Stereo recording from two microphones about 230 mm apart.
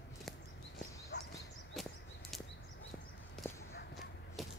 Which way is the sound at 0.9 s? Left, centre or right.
Centre.